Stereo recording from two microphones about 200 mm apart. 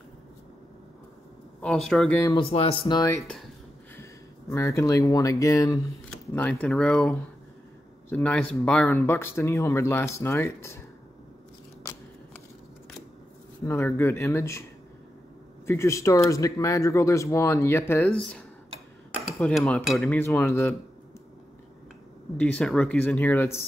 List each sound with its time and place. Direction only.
1.6 s speech: 5° left (ahead or behind)
2.3 s speech: 30° left (ahead or behind)
3.2 s speech: centre (ahead or behind)
3.9 s speech: 10° left (ahead or behind)
6.0 s speech: 5° left (ahead or behind)
13.7 s speech: 10° left (ahead or behind)
15.6 s speech: 15° left (ahead or behind)
18.0 s speech: centre (ahead or behind)
19.1 s cutlery: centre (ahead or behind)
19.6 s speech: 5° left (ahead or behind)
22.4 s speech: 5° left (ahead or behind)